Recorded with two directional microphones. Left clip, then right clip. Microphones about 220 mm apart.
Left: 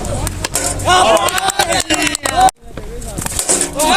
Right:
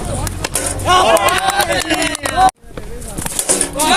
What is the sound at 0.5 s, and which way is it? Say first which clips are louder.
Music: left 1 dB; 20° left (ahead or behind).